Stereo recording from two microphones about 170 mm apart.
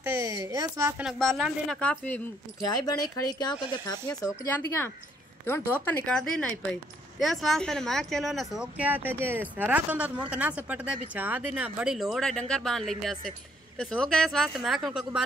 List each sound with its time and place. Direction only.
0.0 s a sound: 15° right (ahead or behind)
1.0 s a woman's voice: centre (ahead or behind)
2.7 s a woman's voice: 25° left (ahead or behind); by 15.2 s 5° right (ahead or behind)